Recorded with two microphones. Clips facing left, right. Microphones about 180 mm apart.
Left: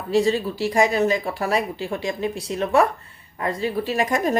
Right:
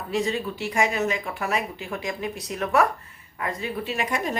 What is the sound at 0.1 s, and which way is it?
Speech, 35° left (ahead or behind).